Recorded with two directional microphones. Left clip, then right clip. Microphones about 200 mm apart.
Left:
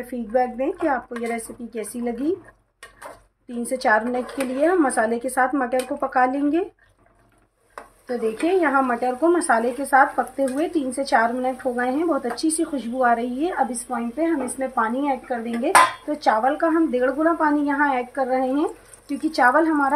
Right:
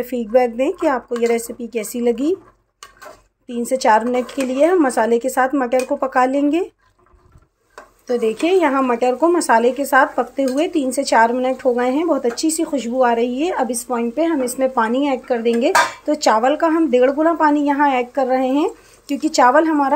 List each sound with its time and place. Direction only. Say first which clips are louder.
0.0 s speech: right 6 dB; 40° right (ahead or behind)
3.4 s speech: right 5 dB; 35° right (ahead or behind)
8.1 s speech: right 5 dB; 40° right (ahead or behind)